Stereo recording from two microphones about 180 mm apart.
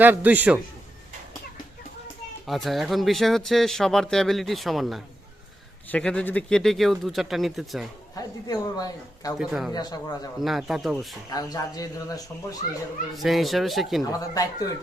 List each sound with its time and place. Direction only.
0.0 s a man's voice: 10° right (ahead or behind)
2.5 s speech: centre (ahead or behind)
8.1 s speech: 20° left (ahead or behind)
9.4 s speech: 5° right (ahead or behind)
9.7 s speech: 20° left (ahead or behind)
10.4 s speech: centre (ahead or behind)
11.3 s speech: 20° left (ahead or behind)
13.1 s speech: centre (ahead or behind)
14.0 s speech: 20° left (ahead or behind)